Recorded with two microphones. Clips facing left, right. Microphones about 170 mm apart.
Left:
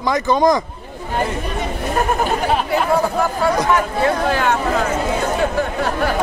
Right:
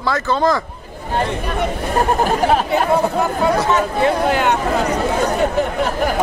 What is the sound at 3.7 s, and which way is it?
Speech, 20° right (ahead or behind).